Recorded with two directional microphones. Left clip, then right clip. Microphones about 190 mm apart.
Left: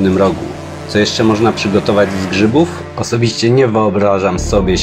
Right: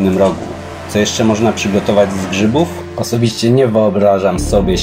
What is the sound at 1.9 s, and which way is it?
Speech, 25° left (ahead or behind).